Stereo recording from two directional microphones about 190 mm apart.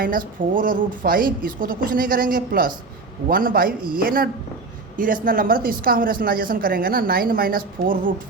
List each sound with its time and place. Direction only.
0.0 s a woman's voice: 45° right (ahead or behind)